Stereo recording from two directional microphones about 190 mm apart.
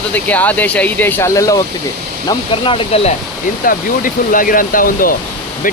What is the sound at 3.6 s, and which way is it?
Speech, 45° left (ahead or behind).